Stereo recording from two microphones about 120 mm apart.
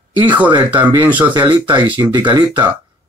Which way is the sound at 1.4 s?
40° right (ahead or behind).